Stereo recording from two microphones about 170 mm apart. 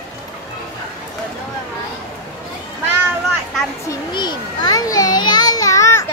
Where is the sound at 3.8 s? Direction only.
25° left (ahead or behind).